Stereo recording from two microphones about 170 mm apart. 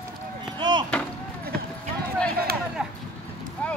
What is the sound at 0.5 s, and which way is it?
Chop, 25° right (ahead or behind).